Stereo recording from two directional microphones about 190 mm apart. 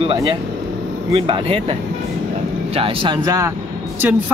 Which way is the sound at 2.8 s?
30° right (ahead or behind).